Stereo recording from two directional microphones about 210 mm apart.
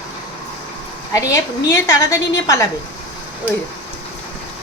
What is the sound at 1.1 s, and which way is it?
Speech, 15° left (ahead or behind).